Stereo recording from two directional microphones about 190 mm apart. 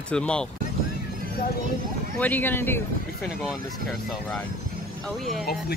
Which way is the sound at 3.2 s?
Centre (ahead or behind).